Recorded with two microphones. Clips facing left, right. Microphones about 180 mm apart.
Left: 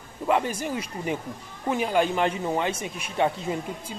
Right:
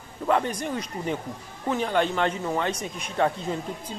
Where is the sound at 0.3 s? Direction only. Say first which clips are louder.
Even; 5° left (ahead or behind).